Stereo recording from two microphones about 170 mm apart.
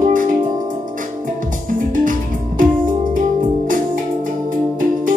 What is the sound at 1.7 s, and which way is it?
Music, 50° right (ahead or behind).